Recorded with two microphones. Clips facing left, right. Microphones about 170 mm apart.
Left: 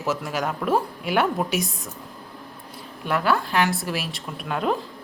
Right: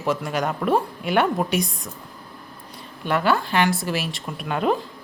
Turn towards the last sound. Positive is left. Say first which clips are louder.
# right 2 dB
turn(degrees=0)  # may be behind; listen again after turning